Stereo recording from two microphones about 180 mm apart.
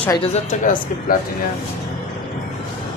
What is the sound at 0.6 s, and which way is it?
Speech, 50° left (ahead or behind).